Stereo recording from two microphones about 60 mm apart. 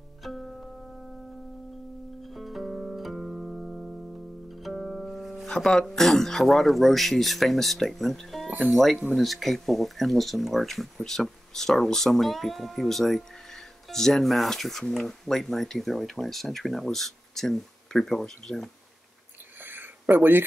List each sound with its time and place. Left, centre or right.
0.2 s music: centre
2.2 s music: centre
5.5 s speech: centre
19.6 s a sound: right